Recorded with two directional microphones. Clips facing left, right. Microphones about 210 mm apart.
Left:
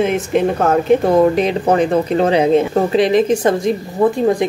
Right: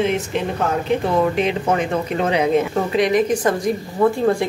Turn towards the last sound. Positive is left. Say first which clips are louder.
# left 3 dB
turn(degrees=20)  # may be behind; listen again after turning